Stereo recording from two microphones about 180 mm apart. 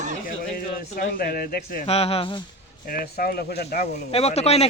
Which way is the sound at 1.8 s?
35° left (ahead or behind).